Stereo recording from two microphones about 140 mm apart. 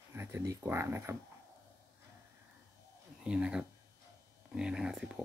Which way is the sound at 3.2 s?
5° right (ahead or behind).